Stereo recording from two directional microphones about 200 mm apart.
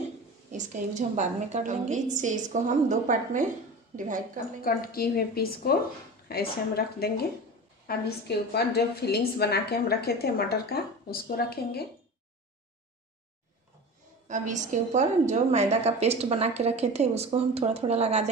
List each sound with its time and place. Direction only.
0.5 s a woman's voice: 35° right (ahead or behind)
4.6 s a woman's voice: 50° left (ahead or behind)
14.2 s a woman's voice: 40° right (ahead or behind)